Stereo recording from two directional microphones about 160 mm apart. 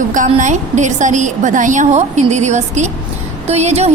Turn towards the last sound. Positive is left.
turn(degrees=-40)  # may be behind; listen again after turning